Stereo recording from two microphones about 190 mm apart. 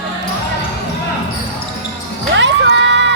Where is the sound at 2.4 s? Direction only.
70° right (ahead or behind).